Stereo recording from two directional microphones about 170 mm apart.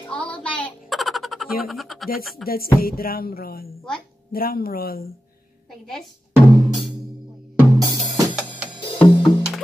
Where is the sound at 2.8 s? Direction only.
60° left (ahead or behind).